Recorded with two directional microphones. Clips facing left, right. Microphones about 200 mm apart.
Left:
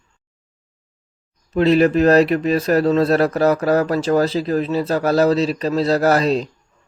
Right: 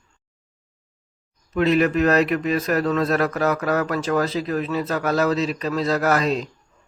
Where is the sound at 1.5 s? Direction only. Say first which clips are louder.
Left 4 dB; 30° left (ahead or behind).